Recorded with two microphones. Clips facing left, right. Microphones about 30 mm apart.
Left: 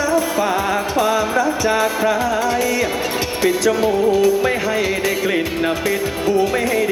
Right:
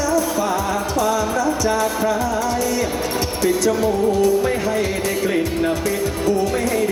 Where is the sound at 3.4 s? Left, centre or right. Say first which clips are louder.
Left 2 dB; left.